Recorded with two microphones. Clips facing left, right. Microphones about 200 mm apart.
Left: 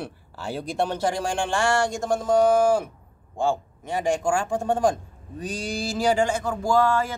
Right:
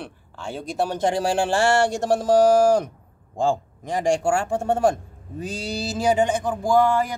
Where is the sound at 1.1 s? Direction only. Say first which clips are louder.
Right 4 dB; 35° right (ahead or behind).